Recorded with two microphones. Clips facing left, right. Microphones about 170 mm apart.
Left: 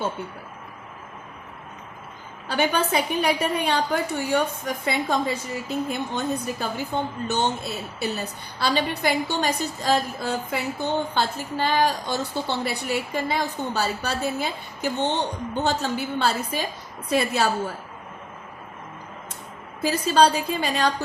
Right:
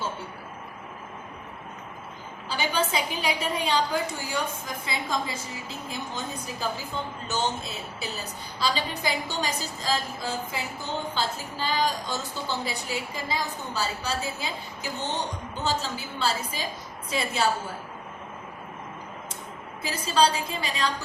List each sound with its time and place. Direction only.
2.5 s a woman's voice: 55° left (ahead or behind)
19.8 s a woman's voice: 65° left (ahead or behind)